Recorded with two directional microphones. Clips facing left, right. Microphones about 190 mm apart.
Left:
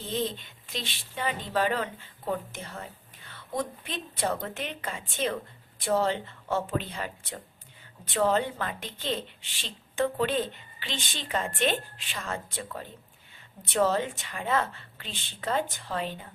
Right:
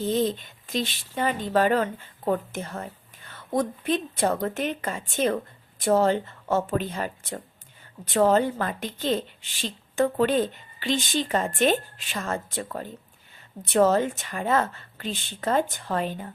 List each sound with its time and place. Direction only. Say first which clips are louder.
0.1 s speech: right 4 dB; 45° right (ahead or behind)